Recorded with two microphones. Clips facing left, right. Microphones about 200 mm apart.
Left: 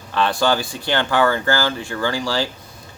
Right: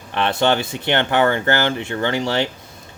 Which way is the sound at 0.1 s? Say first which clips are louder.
Right 1 dB; 20° right (ahead or behind).